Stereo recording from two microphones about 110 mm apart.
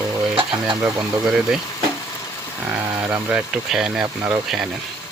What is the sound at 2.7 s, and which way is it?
Speech, 15° right (ahead or behind).